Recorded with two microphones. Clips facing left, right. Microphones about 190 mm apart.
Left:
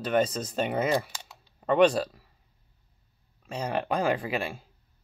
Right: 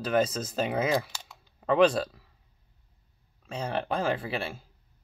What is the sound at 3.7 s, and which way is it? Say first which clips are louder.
Speech: left 2 dB; 10° left (ahead or behind).